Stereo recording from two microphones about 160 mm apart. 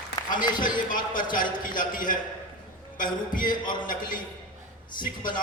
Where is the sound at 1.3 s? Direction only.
60° left (ahead or behind).